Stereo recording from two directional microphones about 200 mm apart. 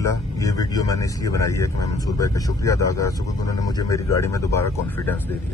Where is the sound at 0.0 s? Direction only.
15° left (ahead or behind).